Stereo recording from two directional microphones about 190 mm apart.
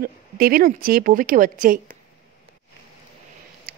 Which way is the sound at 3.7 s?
50° right (ahead or behind).